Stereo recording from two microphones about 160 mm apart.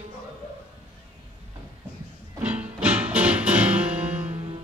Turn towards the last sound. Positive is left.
turn(degrees=-10)  # may be behind; listen again after turning